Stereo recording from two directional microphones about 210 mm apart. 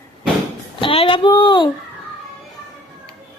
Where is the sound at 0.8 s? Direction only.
25° left (ahead or behind).